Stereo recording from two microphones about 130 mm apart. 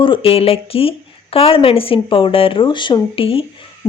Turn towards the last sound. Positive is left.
turn(degrees=45)  # may be behind; listen again after turning